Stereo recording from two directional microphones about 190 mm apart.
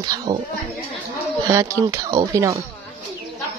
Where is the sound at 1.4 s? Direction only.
15° right (ahead or behind).